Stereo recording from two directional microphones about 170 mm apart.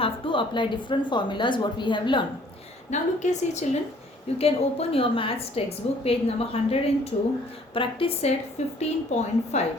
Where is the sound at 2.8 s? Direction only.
45° left (ahead or behind).